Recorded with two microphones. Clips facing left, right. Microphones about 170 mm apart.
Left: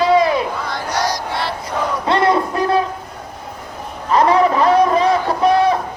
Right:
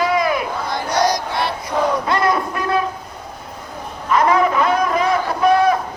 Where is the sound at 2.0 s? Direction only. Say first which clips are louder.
Left 3 dB; 30° left (ahead or behind).